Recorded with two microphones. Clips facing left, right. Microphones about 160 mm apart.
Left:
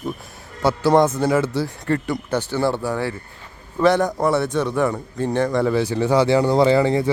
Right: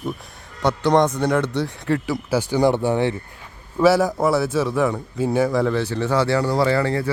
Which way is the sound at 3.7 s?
5° right (ahead or behind).